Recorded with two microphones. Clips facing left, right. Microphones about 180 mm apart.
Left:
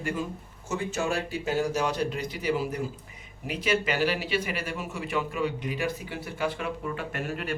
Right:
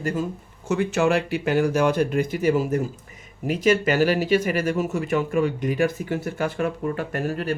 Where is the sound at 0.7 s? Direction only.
65° right (ahead or behind).